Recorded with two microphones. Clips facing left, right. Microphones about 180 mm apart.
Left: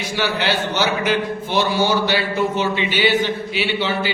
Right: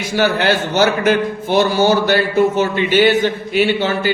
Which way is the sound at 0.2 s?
50° right (ahead or behind).